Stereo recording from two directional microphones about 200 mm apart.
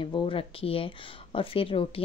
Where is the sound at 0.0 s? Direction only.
25° left (ahead or behind).